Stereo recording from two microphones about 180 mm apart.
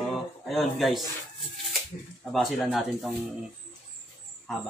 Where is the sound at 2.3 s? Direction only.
Centre (ahead or behind).